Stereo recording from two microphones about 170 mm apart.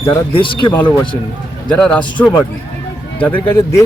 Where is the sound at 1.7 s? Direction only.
5° left (ahead or behind).